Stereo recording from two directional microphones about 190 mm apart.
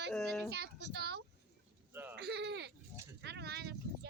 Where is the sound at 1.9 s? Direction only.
10° right (ahead or behind).